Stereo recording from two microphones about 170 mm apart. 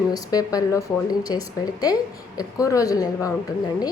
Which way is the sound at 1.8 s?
20° left (ahead or behind).